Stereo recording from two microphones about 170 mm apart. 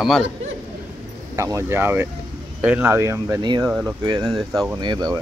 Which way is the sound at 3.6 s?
Centre (ahead or behind).